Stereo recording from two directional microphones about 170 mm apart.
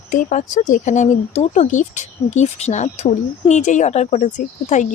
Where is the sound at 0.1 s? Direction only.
50° left (ahead or behind).